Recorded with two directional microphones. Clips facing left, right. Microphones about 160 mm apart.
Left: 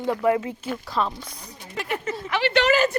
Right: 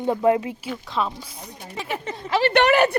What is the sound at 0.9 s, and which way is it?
A woman's voice, centre (ahead or behind).